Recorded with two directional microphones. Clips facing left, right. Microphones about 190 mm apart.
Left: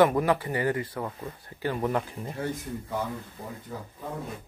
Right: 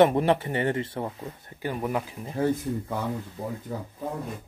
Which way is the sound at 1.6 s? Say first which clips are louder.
Left 1 dB; 10° right (ahead or behind).